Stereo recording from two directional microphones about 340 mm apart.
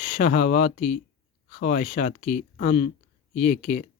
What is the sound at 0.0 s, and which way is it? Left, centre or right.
Speech, left.